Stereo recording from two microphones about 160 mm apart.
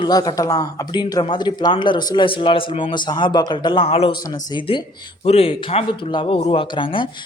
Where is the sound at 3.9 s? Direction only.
40° left (ahead or behind).